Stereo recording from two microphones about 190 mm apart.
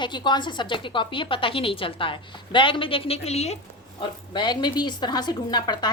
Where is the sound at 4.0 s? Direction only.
25° left (ahead or behind).